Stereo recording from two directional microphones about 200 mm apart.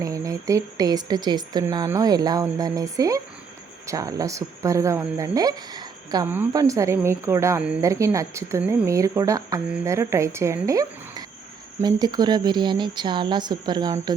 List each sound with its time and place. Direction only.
0.0 s speech: 15° right (ahead or behind)